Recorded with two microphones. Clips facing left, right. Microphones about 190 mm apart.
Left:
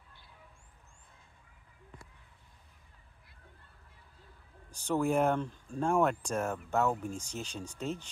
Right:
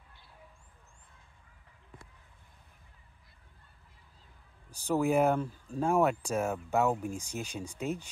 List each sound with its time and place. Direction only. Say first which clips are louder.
4.6 s speech: right 2 dB; 10° right (ahead or behind)